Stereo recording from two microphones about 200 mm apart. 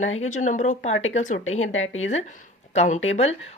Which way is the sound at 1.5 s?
85° left.